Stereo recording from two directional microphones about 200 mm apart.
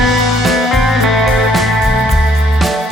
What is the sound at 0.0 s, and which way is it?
Music, centre (ahead or behind).